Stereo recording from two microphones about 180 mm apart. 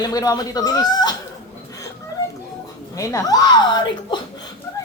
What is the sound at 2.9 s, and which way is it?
Speech, 20° left (ahead or behind).